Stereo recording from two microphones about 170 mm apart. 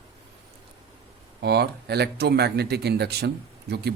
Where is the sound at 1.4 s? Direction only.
75° right (ahead or behind).